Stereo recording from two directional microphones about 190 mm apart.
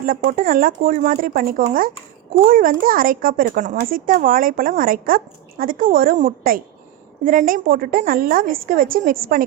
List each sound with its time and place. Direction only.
0.0 s speech: 50° right (ahead or behind)